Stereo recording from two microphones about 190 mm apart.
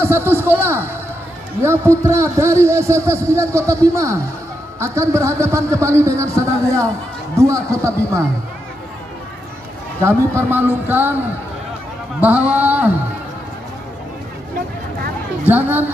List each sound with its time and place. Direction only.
0.0 s a man's voice: 10° right (ahead or behind)
10.0 s a man's voice: 10° right (ahead or behind)
12.2 s a man's voice: 5° right (ahead or behind)
15.4 s a man's voice: 10° right (ahead or behind)